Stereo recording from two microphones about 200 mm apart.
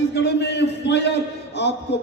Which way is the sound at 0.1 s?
55° left (ahead or behind).